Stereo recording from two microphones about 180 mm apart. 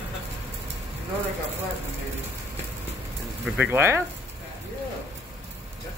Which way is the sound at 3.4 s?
Centre (ahead or behind).